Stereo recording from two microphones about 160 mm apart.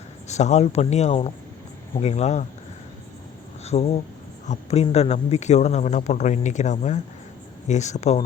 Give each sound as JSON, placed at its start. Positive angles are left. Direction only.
{"t": 0.3, "sound": "a man's voice", "side_deg": 45}
{"t": 3.6, "sound": "a man's voice", "side_deg": 40}